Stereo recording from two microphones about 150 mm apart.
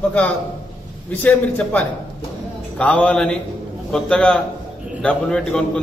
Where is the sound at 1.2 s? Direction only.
10° left (ahead or behind).